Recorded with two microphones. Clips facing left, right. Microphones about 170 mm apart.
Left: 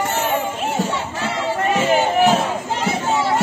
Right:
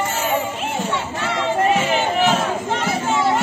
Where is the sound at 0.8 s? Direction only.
30° left (ahead or behind).